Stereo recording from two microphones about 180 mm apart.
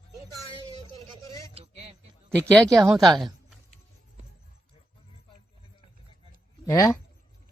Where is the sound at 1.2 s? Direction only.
15° left (ahead or behind).